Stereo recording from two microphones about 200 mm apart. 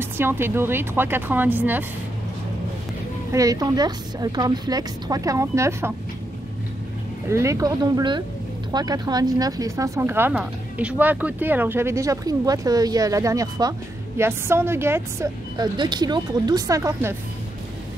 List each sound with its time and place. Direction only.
0.0 s speech: 10° right (ahead or behind)
3.3 s speech: 15° right (ahead or behind)
7.2 s speech: 15° right (ahead or behind)